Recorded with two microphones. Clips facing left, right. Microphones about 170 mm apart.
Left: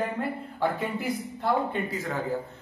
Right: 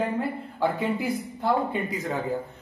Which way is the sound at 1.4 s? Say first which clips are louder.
Right 1 dB; 15° right (ahead or behind).